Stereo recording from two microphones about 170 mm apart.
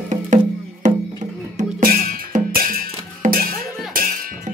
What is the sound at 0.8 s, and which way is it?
Music, 45° right (ahead or behind).